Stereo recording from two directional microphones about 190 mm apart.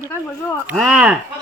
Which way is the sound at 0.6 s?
Centre (ahead or behind).